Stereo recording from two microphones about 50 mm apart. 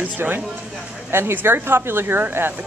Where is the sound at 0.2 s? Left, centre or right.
Right.